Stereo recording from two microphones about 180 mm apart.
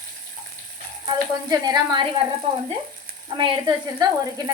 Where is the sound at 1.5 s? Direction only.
20° right (ahead or behind).